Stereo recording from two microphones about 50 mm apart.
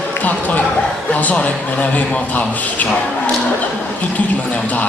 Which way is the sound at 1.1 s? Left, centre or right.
Left.